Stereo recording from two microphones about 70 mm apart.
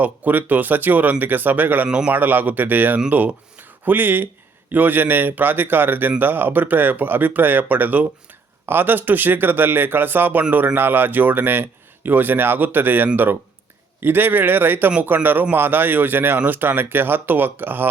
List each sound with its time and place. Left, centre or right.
0.0 s a man's voice: right